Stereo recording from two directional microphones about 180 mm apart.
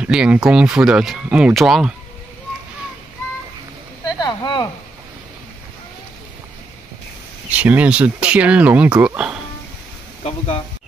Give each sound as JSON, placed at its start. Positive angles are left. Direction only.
{"t": 0.0, "sound": "speech", "side_deg": -5}
{"t": 4.0, "sound": "a sound", "side_deg": 20}
{"t": 7.4, "sound": "speech", "side_deg": -10}
{"t": 10.2, "sound": "speech", "side_deg": 35}